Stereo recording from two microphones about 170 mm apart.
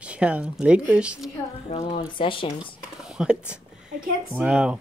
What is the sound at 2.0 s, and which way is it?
Speech, 30° left (ahead or behind).